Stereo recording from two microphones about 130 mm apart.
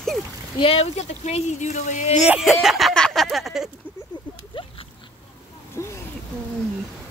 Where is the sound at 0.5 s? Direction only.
45° left (ahead or behind); by 2.2 s 65° left (ahead or behind).